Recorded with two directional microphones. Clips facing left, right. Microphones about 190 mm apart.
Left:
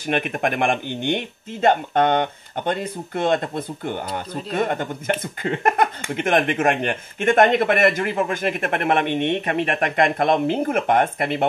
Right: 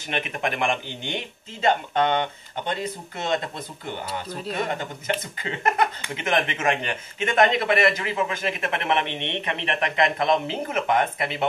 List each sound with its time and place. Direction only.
0.1 s speech: 50° left (ahead or behind)